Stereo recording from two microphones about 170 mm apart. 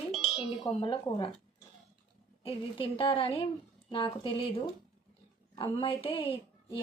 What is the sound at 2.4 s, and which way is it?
A woman's voice, 35° left (ahead or behind).